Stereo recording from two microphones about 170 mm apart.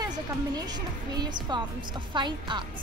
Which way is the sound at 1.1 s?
25° right (ahead or behind).